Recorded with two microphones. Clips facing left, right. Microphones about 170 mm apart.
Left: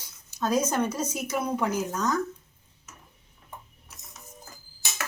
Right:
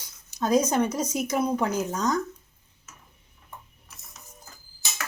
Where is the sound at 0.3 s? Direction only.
15° right (ahead or behind).